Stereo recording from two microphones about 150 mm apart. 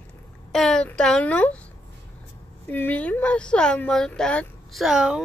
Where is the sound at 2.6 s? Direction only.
10° left (ahead or behind).